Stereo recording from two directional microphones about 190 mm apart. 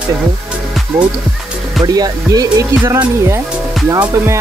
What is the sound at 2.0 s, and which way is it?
Speech, 15° right (ahead or behind).